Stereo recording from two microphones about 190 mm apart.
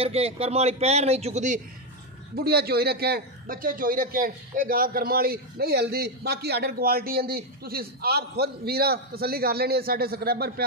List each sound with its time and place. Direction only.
0.0 s a man's voice: 30° right (ahead or behind)
2.3 s a man's voice: 55° right (ahead or behind)